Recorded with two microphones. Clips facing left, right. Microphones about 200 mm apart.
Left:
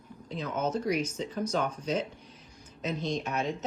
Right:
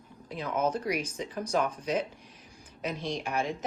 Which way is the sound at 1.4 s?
30° right (ahead or behind).